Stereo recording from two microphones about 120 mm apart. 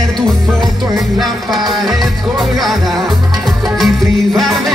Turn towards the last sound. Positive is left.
turn(degrees=0)  # may be behind; listen again after turning